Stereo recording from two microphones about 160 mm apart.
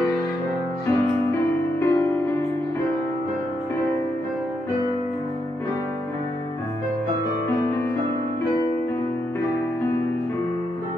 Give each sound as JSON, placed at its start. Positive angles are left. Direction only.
{"t": 0.8, "sound": "music", "side_deg": 15}